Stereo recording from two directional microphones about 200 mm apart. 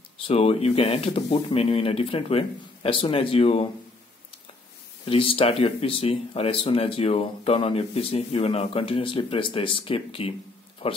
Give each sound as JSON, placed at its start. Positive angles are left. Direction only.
{"t": 0.3, "sound": "speech", "side_deg": 30}
{"t": 5.0, "sound": "speech", "side_deg": 30}